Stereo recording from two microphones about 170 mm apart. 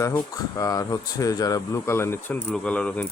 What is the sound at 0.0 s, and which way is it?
Speech, 20° left (ahead or behind).